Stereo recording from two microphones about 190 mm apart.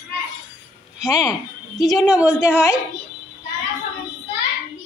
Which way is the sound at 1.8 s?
Centre (ahead or behind).